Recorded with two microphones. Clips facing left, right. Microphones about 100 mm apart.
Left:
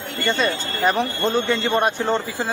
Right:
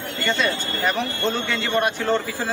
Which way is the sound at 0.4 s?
40° left (ahead or behind).